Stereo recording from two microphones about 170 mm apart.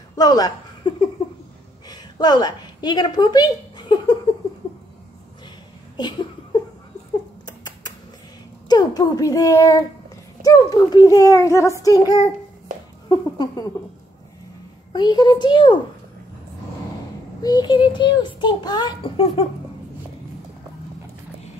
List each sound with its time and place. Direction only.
0.1 s speech: 20° left (ahead or behind)
1.9 s a sound: 25° left (ahead or behind)
5.9 s a sound: 25° left (ahead or behind)
8.6 s a child's voice: 25° left (ahead or behind)
14.9 s a child's voice: 25° left (ahead or behind)
17.4 s a child's voice: 25° left (ahead or behind)